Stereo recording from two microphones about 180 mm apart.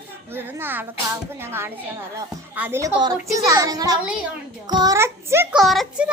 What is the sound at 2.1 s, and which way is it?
A child's voice, 10° right (ahead or behind).